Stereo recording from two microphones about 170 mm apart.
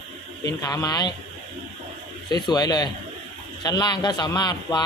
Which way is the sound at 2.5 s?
25° left (ahead or behind).